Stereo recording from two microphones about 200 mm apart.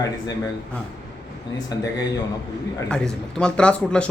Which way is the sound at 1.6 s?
20° left (ahead or behind).